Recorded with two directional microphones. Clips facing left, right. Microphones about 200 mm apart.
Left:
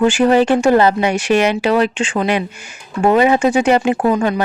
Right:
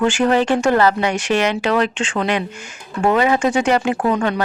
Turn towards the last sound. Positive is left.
turn(degrees=15)  # may be behind; listen again after turning